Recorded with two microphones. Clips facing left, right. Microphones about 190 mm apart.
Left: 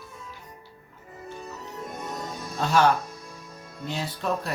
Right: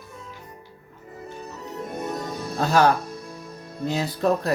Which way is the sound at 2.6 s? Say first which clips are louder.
Right 2 dB; 40° right (ahead or behind).